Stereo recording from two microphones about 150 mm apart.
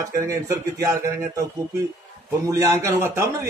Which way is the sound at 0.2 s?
20° right (ahead or behind).